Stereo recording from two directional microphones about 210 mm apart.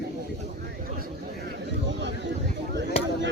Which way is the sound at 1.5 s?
55° right (ahead or behind).